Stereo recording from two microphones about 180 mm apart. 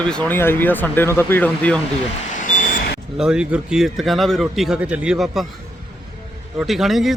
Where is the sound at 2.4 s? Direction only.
45° left (ahead or behind).